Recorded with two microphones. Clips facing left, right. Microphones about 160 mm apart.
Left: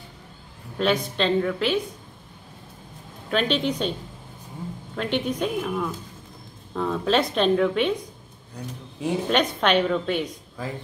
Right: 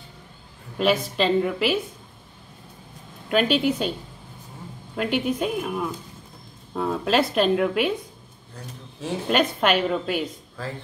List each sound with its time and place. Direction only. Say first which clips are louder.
0.7 s a woman's voice: right 1 dB; 5° right (ahead or behind)
3.3 s a woman's voice: right 3 dB; 5° right (ahead or behind)
4.9 s a woman's voice: right 2 dB; 5° right (ahead or behind)
9.3 s a woman's voice: right 1 dB; 5° right (ahead or behind)
10.6 s speech: left 1 dB; 15° left (ahead or behind)